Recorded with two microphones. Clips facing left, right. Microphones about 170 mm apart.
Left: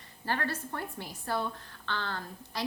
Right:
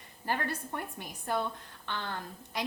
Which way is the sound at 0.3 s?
15° right (ahead or behind).